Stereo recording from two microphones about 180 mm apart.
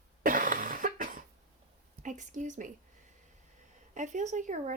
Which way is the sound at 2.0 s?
45° right (ahead or behind).